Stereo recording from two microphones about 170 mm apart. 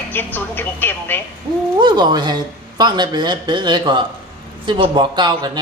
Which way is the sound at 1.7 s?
25° right (ahead or behind).